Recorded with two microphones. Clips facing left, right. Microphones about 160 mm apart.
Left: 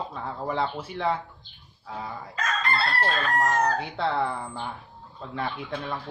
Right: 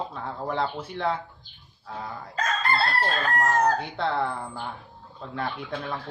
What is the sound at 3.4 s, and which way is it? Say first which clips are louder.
Speech: right 2 dB; centre (ahead or behind).